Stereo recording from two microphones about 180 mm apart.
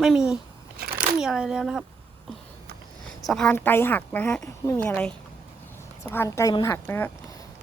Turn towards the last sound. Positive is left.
turn(degrees=15)  # may be behind; listen again after turning